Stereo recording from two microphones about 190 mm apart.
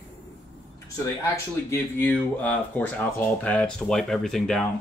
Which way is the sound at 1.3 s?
10° left (ahead or behind).